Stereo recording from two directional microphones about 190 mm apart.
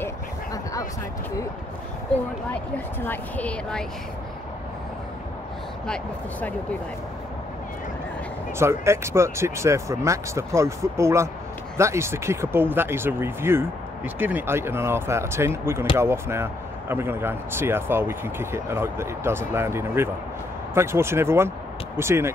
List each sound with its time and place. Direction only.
0.0 s a sound: 20° left (ahead or behind)
2.5 s speech: 10° left (ahead or behind)
8.5 s speech: 15° right (ahead or behind)